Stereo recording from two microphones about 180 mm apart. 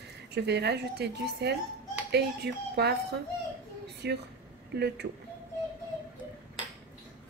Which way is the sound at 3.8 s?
65° right (ahead or behind).